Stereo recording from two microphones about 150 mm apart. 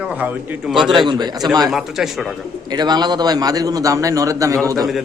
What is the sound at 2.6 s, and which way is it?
A man's voice, 30° right (ahead or behind).